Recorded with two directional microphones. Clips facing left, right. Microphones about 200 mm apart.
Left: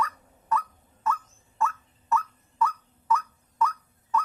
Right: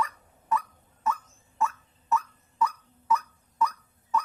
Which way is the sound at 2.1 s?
15° right (ahead or behind).